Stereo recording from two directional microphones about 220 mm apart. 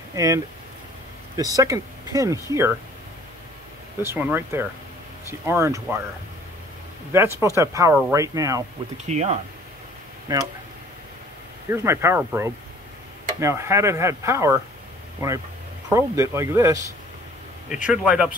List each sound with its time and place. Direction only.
0.1 s speech: 15° right (ahead or behind)
4.0 s speech: 10° right (ahead or behind)
7.1 s speech: 10° right (ahead or behind)
9.0 s speech: 30° right (ahead or behind)
10.3 s speech: 15° right (ahead or behind)
11.7 s speech: 10° right (ahead or behind)
17.8 s speech: 5° right (ahead or behind)